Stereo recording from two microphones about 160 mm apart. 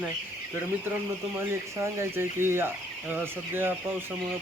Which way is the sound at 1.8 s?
15° right (ahead or behind).